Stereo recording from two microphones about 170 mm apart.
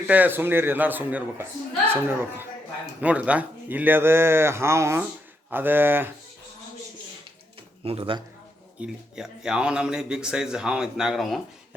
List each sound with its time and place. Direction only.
0.1 s speech: 10° right (ahead or behind)
7.9 s speech: 30° right (ahead or behind)
8.8 s a man's voice: 5° right (ahead or behind)